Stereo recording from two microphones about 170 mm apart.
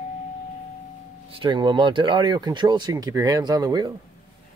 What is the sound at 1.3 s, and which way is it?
Speech, 30° right (ahead or behind).